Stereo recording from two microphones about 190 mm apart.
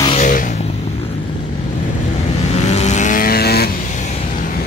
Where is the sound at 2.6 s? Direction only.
35° left (ahead or behind); by 3.7 s 55° left (ahead or behind).